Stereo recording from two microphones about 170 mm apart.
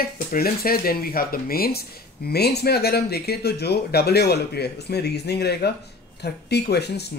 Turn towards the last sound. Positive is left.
turn(degrees=75)  # may be behind; listen again after turning